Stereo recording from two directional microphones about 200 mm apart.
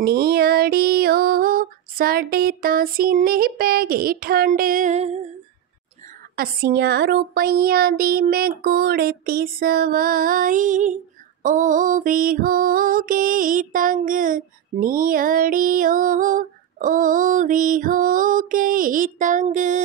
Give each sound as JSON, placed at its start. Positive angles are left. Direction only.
{"t": 0.0, "sound": "music", "side_deg": -50}
{"t": 6.3, "sound": "music", "side_deg": -50}